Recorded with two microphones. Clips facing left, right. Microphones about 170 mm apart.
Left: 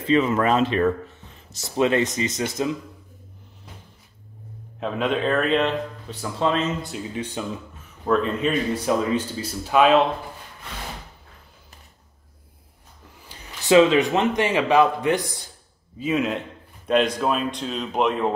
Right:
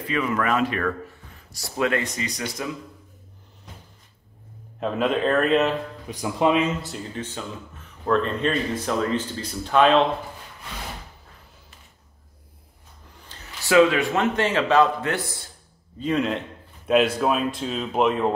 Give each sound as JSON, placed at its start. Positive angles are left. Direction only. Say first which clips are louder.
{"t": 0.0, "sound": "speech", "louder": "left 5 dB", "side_deg": 25}
{"t": 4.7, "sound": "a man's voice", "louder": "right 1 dB", "side_deg": 0}
{"t": 6.0, "sound": "speech", "louder": "right 4 dB", "side_deg": -15}
{"t": 6.9, "sound": "speech", "louder": "left 2 dB", "side_deg": 10}
{"t": 13.3, "sound": "a man's voice", "louder": "left 4 dB", "side_deg": 20}
{"t": 16.0, "sound": "a man's voice", "louder": "even", "side_deg": 5}